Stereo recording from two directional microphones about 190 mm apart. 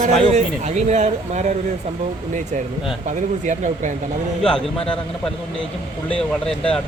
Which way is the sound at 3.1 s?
40° right (ahead or behind).